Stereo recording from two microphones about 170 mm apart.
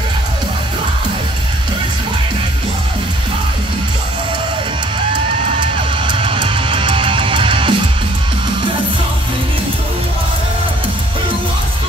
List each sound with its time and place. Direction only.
5.6 s music: 30° right (ahead or behind)